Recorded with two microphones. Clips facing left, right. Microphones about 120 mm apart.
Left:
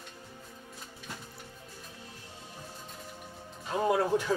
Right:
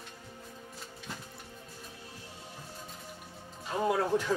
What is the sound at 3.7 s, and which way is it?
Music, 5° left (ahead or behind).